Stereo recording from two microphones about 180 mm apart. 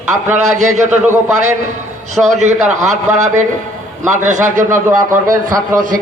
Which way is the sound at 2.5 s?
40° right (ahead or behind).